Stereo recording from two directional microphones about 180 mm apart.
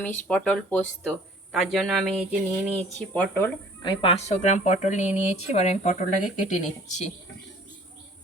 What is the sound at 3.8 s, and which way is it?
A woman's voice, 30° left (ahead or behind).